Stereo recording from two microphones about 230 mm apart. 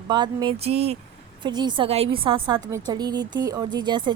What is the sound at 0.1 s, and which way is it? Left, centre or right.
A woman's voice, centre.